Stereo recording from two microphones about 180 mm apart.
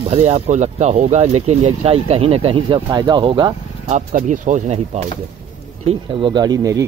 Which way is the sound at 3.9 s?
40° right (ahead or behind).